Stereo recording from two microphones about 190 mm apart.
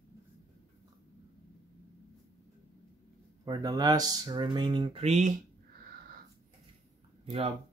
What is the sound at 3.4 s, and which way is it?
Speech, 20° right (ahead or behind).